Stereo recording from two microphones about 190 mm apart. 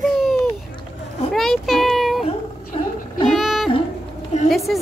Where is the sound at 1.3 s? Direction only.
Centre (ahead or behind).